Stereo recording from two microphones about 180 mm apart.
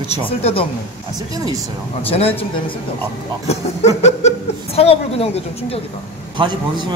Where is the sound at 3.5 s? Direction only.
40° left (ahead or behind).